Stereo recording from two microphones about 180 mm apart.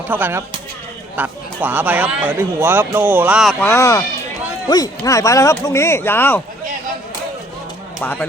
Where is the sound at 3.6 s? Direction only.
15° left (ahead or behind).